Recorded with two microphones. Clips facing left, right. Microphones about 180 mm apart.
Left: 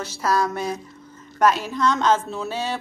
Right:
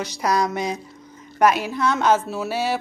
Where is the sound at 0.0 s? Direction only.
15° right (ahead or behind).